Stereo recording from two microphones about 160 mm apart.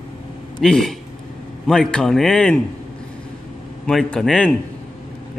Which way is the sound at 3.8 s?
5° left (ahead or behind).